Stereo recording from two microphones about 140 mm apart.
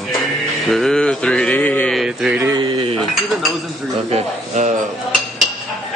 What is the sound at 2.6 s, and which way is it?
Cutlery, 35° right (ahead or behind).